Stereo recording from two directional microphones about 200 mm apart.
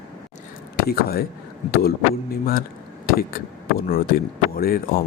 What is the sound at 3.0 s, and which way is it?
Speech, 45° left (ahead or behind).